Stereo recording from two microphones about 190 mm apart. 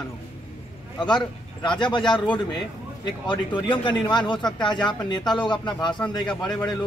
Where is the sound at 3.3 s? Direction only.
25° left (ahead or behind).